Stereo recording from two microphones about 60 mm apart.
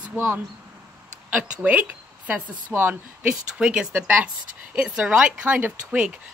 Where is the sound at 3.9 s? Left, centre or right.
Right.